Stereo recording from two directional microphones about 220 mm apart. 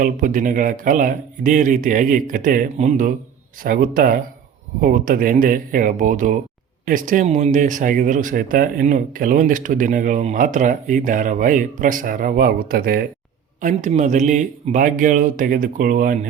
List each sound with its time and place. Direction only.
0.0 s speech: 40° right (ahead or behind)